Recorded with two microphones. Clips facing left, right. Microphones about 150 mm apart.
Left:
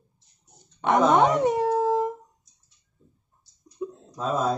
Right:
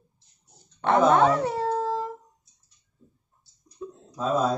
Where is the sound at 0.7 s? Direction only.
15° left (ahead or behind).